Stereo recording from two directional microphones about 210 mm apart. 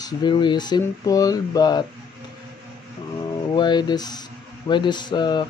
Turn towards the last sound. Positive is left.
turn(degrees=20)  # may be behind; listen again after turning